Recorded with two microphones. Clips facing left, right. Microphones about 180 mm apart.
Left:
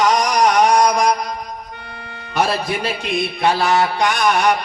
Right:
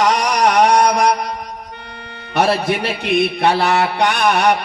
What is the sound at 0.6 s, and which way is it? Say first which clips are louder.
Mantra: right 1 dB; 65° right (ahead or behind).